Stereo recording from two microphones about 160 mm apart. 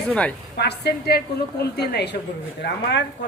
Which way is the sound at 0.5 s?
90° left.